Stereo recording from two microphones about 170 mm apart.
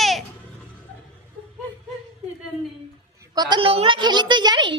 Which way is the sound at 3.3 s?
25° right (ahead or behind).